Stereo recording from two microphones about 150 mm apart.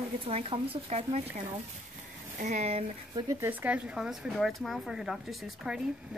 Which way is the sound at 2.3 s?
55° right (ahead or behind).